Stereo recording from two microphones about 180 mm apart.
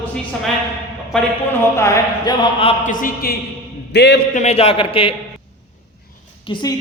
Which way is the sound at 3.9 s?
70° left (ahead or behind).